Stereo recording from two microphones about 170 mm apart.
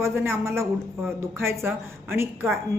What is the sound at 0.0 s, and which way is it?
A woman's voice, 15° right (ahead or behind).